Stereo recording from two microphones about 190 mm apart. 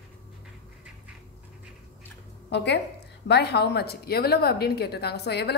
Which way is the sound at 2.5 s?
65° left (ahead or behind).